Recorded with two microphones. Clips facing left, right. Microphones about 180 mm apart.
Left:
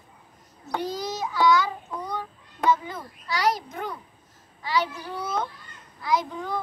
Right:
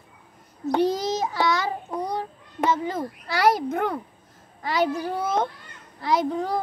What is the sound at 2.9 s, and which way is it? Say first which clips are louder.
A child's voice: right 5 dB; 50° right (ahead or behind).